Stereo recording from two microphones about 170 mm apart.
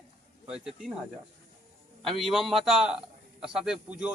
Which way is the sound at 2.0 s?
Centre (ahead or behind).